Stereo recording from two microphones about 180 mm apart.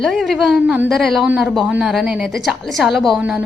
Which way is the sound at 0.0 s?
Centre (ahead or behind).